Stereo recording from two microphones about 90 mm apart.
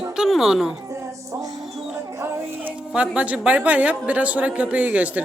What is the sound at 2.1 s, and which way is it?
Speech, 25° right (ahead or behind).